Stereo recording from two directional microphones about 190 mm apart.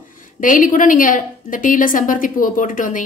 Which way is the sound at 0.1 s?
45° left (ahead or behind).